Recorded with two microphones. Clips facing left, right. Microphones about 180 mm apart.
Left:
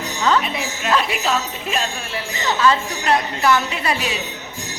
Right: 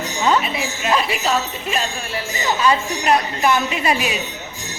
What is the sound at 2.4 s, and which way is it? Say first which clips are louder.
Speech: even; 15° right (ahead or behind).